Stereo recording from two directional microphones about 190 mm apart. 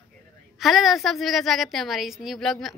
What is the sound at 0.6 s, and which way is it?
A woman's voice, centre (ahead or behind).